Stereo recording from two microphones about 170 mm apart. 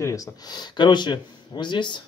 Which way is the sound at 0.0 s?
20° left (ahead or behind).